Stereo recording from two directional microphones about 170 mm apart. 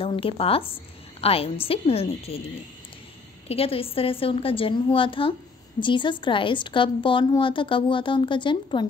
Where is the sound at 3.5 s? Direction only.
35° left (ahead or behind).